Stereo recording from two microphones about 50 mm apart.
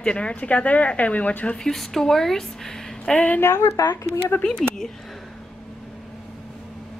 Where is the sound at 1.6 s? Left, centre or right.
Centre.